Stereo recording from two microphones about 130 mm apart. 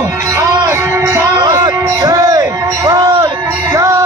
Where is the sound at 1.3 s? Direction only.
30° right (ahead or behind).